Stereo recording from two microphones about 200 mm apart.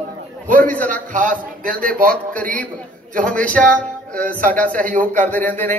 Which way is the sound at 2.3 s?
5° left (ahead or behind).